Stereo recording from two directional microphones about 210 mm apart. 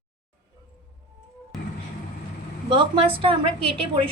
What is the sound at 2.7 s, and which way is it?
Speech, 25° right (ahead or behind).